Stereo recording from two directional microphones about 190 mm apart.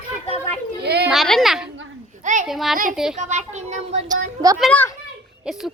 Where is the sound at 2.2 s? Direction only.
40° right (ahead or behind).